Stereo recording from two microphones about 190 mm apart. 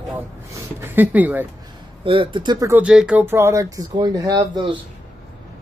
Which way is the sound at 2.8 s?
5° right (ahead or behind).